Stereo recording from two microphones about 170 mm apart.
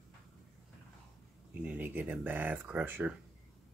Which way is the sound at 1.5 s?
10° right (ahead or behind).